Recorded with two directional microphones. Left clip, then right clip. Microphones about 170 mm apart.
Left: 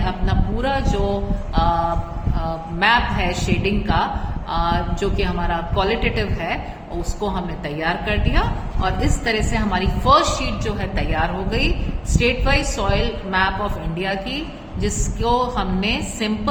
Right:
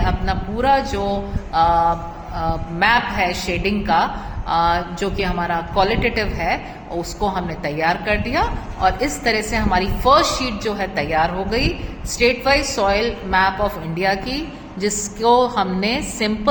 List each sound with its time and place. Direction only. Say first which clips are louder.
0.0 s a woman's voice: right 3 dB; 30° right (ahead or behind)